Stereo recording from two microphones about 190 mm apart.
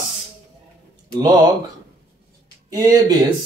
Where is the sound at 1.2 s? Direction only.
20° right (ahead or behind).